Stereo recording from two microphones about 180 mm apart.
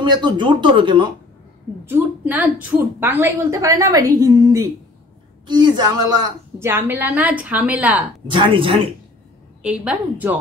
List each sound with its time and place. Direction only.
0.0 s a woman's voice: 25° right (ahead or behind)
1.9 s a woman's voice: 10° right (ahead or behind)
8.3 s a woman's voice: 30° right (ahead or behind)
9.6 s a woman's voice: 5° right (ahead or behind)